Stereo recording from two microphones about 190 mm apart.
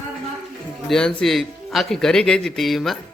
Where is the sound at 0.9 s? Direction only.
5° left (ahead or behind).